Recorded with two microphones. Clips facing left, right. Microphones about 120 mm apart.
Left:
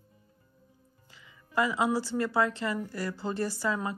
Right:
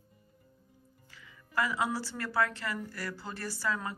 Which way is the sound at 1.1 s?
20° left (ahead or behind).